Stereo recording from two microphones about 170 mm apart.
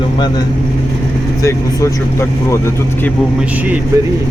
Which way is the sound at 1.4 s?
20° left (ahead or behind).